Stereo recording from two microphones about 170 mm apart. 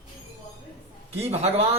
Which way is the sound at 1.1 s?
35° right (ahead or behind).